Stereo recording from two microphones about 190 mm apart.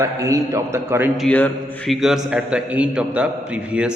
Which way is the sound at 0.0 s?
15° right (ahead or behind).